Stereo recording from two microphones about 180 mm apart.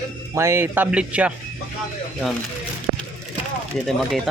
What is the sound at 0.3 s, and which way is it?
Speech, 15° right (ahead or behind).